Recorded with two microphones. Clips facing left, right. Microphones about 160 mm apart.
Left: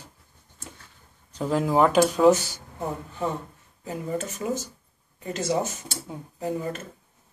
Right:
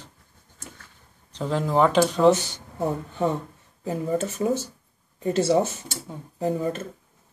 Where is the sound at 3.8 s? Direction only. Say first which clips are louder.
Right 5 dB; 35° right (ahead or behind).